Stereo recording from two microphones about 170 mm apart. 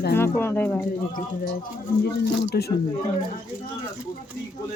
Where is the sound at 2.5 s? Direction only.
70° left (ahead or behind).